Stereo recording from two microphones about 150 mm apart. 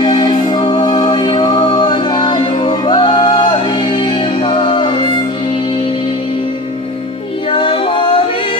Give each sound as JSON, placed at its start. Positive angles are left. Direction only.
{"t": 0.0, "sound": "music", "side_deg": 30}
{"t": 7.5, "sound": "music", "side_deg": 35}